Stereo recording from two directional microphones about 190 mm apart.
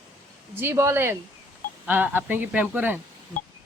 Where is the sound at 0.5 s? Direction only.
15° right (ahead or behind).